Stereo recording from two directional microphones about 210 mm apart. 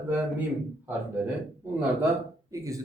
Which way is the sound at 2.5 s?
15° right (ahead or behind).